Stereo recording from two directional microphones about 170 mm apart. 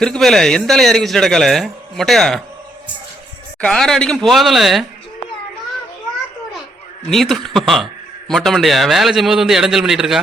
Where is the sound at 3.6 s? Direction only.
5° left (ahead or behind).